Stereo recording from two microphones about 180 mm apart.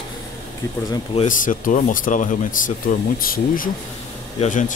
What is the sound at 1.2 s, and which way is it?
Speech, 45° left (ahead or behind).